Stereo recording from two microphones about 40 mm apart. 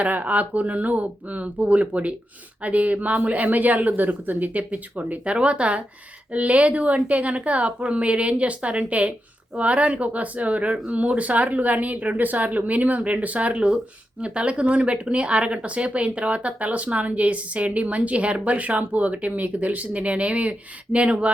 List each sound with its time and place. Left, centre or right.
0.0 s speech: right